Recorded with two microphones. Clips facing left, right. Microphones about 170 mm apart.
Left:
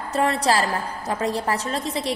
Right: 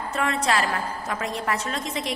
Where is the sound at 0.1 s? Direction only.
35° left (ahead or behind).